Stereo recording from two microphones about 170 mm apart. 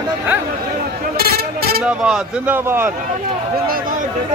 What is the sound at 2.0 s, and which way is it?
Speech, 5° right (ahead or behind).